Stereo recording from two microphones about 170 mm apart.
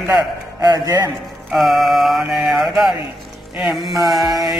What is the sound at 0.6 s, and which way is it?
Speech, 20° right (ahead or behind).